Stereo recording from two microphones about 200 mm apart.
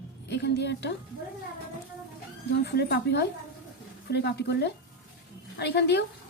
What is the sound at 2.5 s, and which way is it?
A woman's voice, 55° left (ahead or behind).